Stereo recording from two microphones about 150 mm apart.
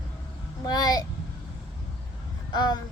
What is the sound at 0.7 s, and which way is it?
Speech, 25° left (ahead or behind).